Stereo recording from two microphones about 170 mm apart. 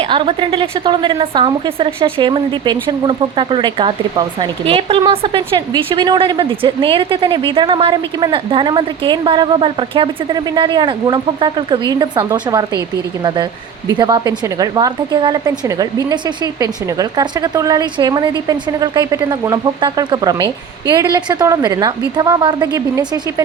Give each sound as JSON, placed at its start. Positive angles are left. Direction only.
{"t": 0.0, "sound": "a woman's voice", "side_deg": -30}